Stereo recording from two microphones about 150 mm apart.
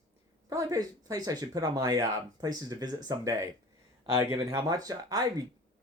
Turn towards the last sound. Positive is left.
turn(degrees=-25)  # may be behind; listen again after turning